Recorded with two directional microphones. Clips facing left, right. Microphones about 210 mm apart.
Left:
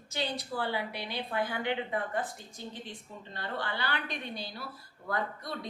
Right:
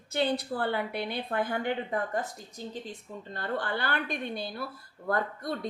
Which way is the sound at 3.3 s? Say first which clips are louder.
Right 4 dB; 50° right (ahead or behind).